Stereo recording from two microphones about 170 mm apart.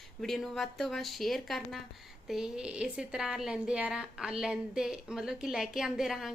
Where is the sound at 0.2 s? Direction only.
Centre (ahead or behind).